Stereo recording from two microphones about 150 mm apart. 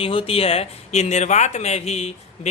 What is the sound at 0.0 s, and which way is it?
A man's voice, 35° left (ahead or behind).